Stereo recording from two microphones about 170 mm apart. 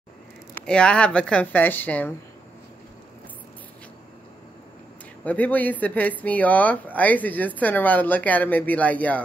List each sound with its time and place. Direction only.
0.6 s speech: 5° left (ahead or behind)
5.2 s speech: 10° left (ahead or behind)